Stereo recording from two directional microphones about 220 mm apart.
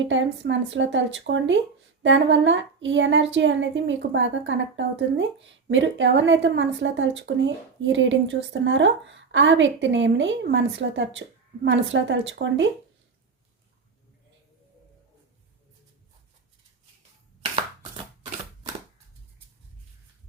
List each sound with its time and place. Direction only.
0.0 s a woman's voice: 55° right (ahead or behind)